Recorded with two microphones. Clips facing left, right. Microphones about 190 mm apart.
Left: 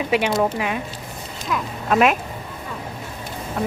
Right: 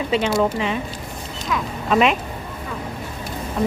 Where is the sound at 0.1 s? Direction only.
15° left (ahead or behind).